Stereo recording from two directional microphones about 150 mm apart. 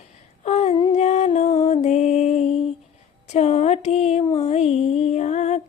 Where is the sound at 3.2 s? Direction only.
50° left (ahead or behind).